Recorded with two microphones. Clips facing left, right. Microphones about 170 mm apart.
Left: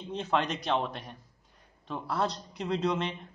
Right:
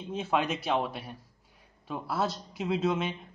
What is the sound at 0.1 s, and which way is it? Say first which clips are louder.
A man's voice: right 1 dB; 5° right (ahead or behind).